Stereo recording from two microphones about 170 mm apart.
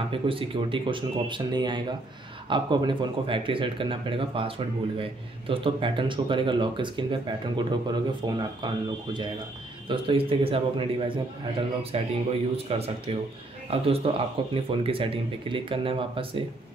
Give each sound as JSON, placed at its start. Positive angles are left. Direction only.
{"t": 0.1, "sound": "speech", "side_deg": -30}